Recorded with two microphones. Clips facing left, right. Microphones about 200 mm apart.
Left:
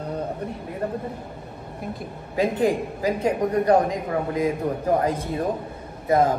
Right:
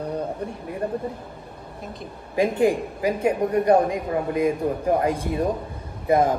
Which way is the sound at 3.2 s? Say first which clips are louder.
Right 1 dB; 10° right (ahead or behind).